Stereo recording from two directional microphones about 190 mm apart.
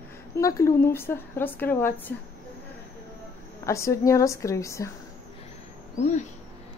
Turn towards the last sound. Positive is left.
turn(degrees=35)  # may be behind; listen again after turning